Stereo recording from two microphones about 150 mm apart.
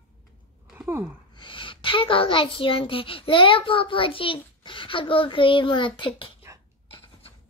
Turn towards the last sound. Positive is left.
turn(degrees=35)  # may be behind; listen again after turning